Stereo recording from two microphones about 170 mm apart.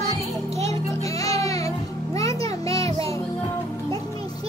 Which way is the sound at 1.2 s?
20° left (ahead or behind).